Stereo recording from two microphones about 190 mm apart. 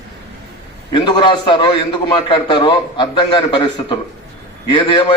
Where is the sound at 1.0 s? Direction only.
25° left (ahead or behind).